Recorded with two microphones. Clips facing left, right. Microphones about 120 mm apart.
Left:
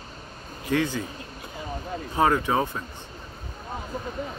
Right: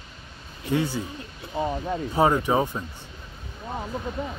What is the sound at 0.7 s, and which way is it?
Speech, 10° right (ahead or behind).